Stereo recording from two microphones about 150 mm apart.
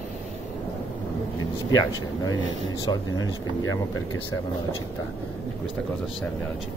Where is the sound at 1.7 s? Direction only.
25° left (ahead or behind).